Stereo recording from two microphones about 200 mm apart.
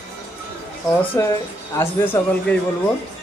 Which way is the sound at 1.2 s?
15° left (ahead or behind).